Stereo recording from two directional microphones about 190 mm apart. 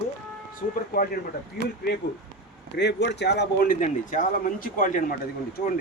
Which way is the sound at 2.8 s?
65° left (ahead or behind).